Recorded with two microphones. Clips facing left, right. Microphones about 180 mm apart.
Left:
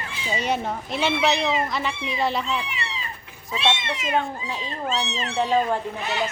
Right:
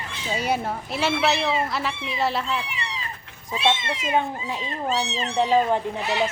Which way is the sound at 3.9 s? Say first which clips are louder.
Right 1 dB; 30° right (ahead or behind).